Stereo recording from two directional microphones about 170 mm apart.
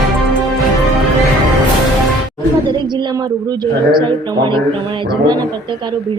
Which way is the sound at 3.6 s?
25° right (ahead or behind).